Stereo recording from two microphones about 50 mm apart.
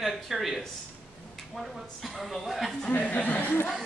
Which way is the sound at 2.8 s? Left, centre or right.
Left.